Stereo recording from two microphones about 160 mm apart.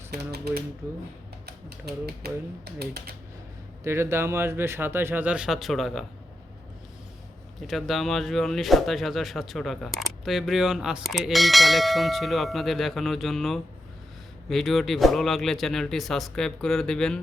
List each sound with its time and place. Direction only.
0.1 s speech: 90° right
3.8 s speech: 15° right (ahead or behind); by 6.1 s centre (ahead or behind)
7.7 s speech: centre (ahead or behind)